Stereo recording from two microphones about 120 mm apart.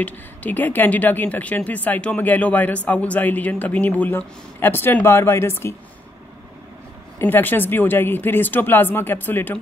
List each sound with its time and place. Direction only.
0.0 s speech: 15° left (ahead or behind)
7.2 s speech: 15° left (ahead or behind)